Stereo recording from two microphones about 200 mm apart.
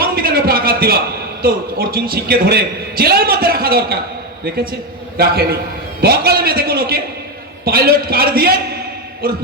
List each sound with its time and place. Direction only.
0.0 s a sound: 50° right (ahead or behind)
1.4 s a man's voice: 50° right (ahead or behind)
5.1 s a man's voice: 50° right (ahead or behind)